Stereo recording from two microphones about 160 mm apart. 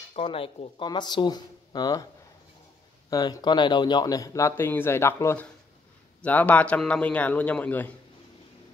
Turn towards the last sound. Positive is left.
turn(degrees=10)  # may be behind; listen again after turning